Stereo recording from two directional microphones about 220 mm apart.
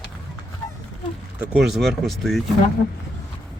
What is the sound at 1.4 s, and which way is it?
Speech, 5° right (ahead or behind).